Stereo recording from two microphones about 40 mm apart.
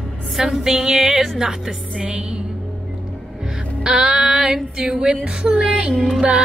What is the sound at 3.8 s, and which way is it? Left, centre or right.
Music, centre.